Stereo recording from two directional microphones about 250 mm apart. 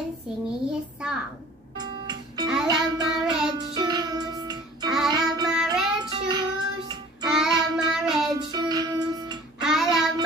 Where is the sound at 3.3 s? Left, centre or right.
Centre.